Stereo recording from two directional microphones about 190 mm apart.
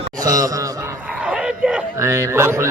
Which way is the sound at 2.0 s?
15° right (ahead or behind).